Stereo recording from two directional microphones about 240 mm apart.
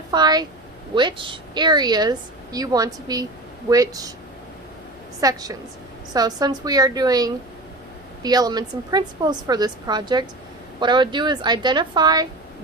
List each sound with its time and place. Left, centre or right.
0.1 s a woman's voice: centre
5.2 s a woman's voice: centre